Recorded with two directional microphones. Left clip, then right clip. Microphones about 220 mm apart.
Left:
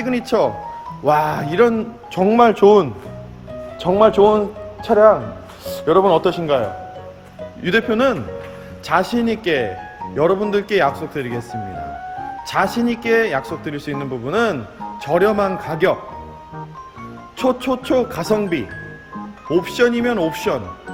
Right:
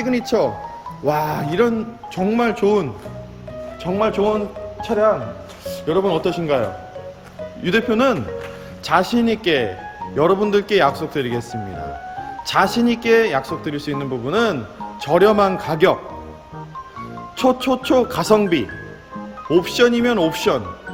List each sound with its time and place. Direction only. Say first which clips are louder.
0.0 s a man's voice: left 1 dB; centre (ahead or behind)
2.1 s speech: left 7 dB; 20° left (ahead or behind)
3.8 s a man's voice: left 6 dB; 30° left (ahead or behind); by 16.0 s 5° right (ahead or behind)
17.3 s a man's voice: right 1 dB; centre (ahead or behind)